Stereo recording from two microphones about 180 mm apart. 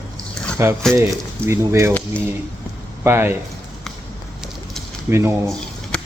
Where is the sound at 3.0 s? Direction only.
15° right (ahead or behind).